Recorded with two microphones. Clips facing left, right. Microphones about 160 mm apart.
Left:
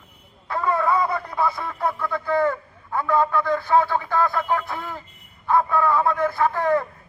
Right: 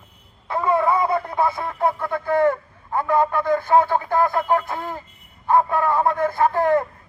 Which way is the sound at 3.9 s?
45° right (ahead or behind).